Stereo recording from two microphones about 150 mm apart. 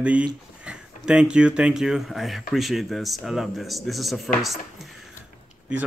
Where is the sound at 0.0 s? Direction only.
5° right (ahead or behind).